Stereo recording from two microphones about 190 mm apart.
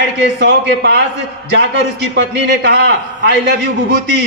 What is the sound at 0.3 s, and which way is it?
A man's voice, 65° right (ahead or behind).